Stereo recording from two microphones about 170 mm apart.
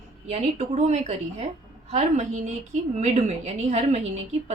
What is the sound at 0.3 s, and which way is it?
A woman's voice, 40° right (ahead or behind).